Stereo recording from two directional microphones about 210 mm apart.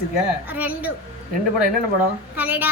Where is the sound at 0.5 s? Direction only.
10° right (ahead or behind).